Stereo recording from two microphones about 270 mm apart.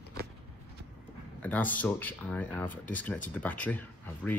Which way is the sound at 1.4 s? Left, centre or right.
Centre.